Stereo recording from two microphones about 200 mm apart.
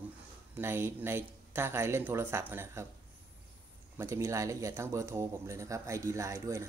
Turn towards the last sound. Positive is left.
turn(degrees=-15)  # may be behind; listen again after turning